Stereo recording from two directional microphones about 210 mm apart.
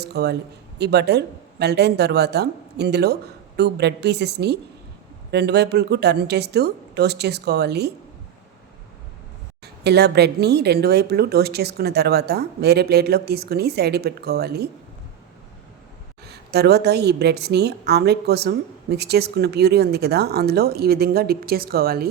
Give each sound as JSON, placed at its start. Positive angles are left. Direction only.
{"t": 0.0, "sound": "a woman's voice", "side_deg": -50}
{"t": 9.8, "sound": "a woman's voice", "side_deg": -50}
{"t": 16.2, "sound": "a woman's voice", "side_deg": -50}